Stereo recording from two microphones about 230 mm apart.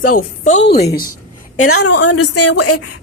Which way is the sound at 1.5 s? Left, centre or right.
Left.